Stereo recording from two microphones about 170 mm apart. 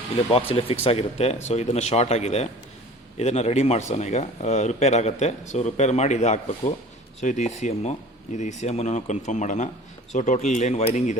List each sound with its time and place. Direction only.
0.5 s speech: 35° left (ahead or behind)